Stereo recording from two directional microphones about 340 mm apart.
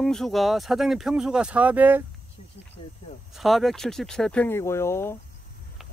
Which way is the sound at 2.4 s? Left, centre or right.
Centre.